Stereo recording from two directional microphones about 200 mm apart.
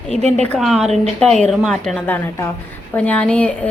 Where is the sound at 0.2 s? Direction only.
30° right (ahead or behind).